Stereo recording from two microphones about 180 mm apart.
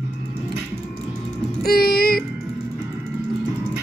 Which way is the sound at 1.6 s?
60° left (ahead or behind).